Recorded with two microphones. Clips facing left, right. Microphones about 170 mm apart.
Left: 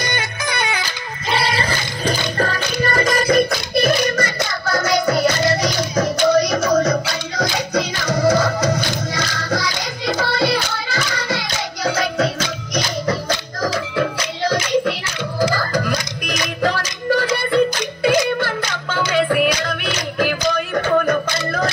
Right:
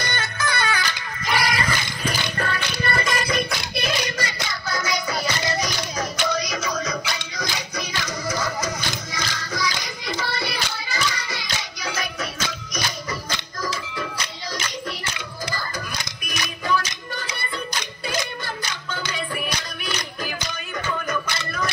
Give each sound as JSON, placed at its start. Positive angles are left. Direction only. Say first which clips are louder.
{"t": 0.0, "sound": "music", "louder": "left 3 dB", "side_deg": 15}
{"t": 6.3, "sound": "music", "louder": "left 11 dB", "side_deg": 60}